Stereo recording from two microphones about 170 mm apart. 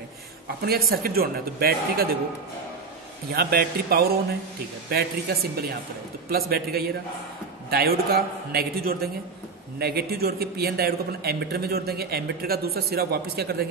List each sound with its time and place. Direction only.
0.6 s a man's voice: 65° right (ahead or behind)
3.3 s a man's voice: 65° right (ahead or behind)